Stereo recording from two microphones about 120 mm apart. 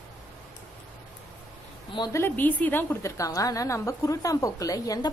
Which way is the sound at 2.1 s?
15° left (ahead or behind).